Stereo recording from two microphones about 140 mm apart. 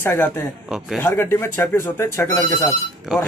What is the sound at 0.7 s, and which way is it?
Speech, centre (ahead or behind).